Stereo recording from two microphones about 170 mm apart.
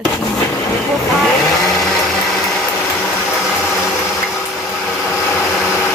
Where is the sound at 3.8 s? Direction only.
Centre (ahead or behind).